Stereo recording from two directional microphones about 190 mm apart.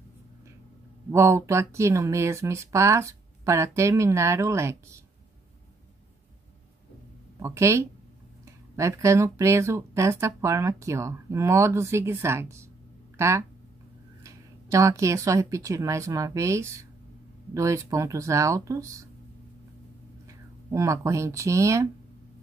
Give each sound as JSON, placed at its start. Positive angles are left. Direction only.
{"t": 1.1, "sound": "speech", "side_deg": -15}
{"t": 7.3, "sound": "speech", "side_deg": -15}
{"t": 20.7, "sound": "speech", "side_deg": -15}